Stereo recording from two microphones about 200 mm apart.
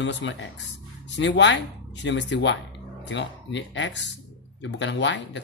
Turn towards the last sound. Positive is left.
turn(degrees=65)  # may be behind; listen again after turning